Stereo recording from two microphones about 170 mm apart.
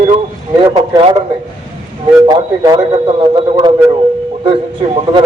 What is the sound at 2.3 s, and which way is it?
A man's voice, 20° right (ahead or behind).